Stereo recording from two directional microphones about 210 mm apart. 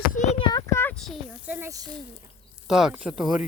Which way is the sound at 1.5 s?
15° right (ahead or behind).